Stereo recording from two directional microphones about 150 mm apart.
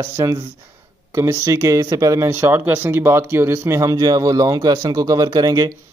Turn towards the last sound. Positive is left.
turn(degrees=-25)  # may be behind; listen again after turning